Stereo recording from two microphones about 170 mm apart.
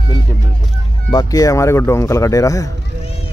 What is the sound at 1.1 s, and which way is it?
Speech, 20° left (ahead or behind).